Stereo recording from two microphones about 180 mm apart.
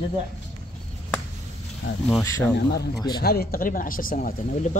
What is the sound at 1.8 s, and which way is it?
Speech, 90° left.